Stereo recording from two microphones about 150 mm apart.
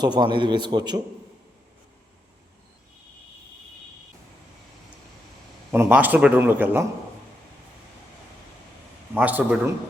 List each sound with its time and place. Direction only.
0.0 s a man's voice: 30° right (ahead or behind)
5.7 s speech: 15° right (ahead or behind)
9.1 s speech: 10° right (ahead or behind)